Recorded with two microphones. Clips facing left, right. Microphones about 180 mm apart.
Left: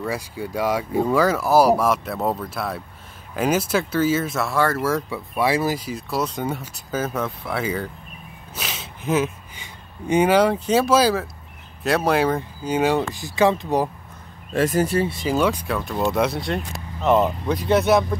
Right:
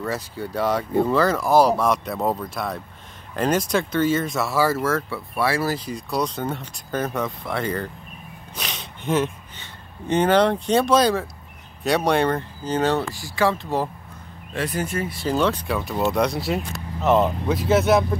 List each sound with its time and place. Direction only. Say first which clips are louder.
0.0 s speech: left 1 dB; 10° left (ahead or behind)
4.8 s speech: left 1 dB; 15° left (ahead or behind)
14.5 s speech: left 6 dB; 45° left (ahead or behind)
15.1 s speech: left 1 dB; 10° left (ahead or behind)
15.7 s speech: even; centre (ahead or behind)